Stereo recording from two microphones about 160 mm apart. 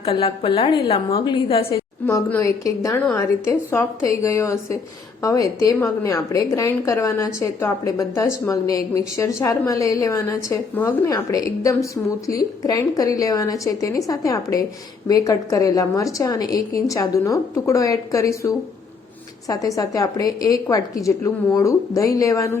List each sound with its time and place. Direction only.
0.0 s a woman's voice: 35° left (ahead or behind)
1.7 s a woman's voice: 15° left (ahead or behind)